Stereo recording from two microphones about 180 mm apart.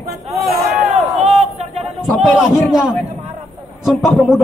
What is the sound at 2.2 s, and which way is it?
A man's voice, centre (ahead or behind).